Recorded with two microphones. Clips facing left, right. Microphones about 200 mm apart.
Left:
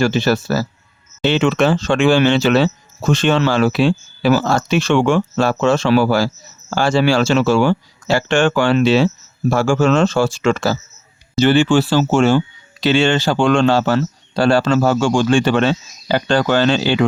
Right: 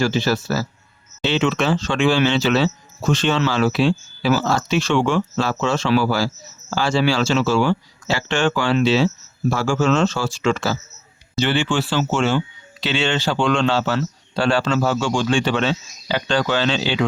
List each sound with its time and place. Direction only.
0.0 s speech: 60° left (ahead or behind)